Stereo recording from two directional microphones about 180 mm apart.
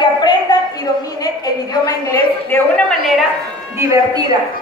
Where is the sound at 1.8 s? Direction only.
20° left (ahead or behind).